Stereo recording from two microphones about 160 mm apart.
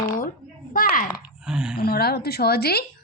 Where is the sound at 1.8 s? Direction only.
70° left (ahead or behind).